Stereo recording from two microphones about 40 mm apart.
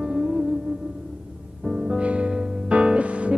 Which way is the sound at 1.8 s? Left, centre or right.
Right.